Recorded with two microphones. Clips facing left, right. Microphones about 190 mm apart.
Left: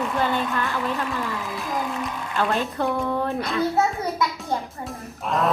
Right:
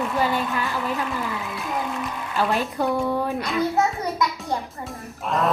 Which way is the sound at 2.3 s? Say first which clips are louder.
Right 1 dB; centre (ahead or behind).